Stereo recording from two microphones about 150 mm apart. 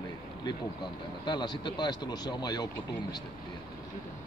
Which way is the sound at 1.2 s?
30° left (ahead or behind).